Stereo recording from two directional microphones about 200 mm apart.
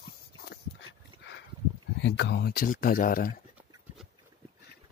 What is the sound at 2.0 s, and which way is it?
Speech, 60° left (ahead or behind).